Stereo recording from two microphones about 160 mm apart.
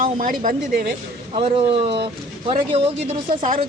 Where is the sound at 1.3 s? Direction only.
35° right (ahead or behind).